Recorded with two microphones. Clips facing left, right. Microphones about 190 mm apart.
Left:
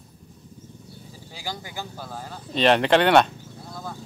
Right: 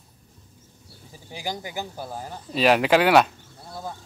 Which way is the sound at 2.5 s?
5° right (ahead or behind).